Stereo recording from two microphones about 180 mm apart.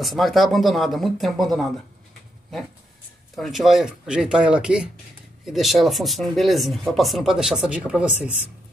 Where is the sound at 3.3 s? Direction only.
Centre (ahead or behind).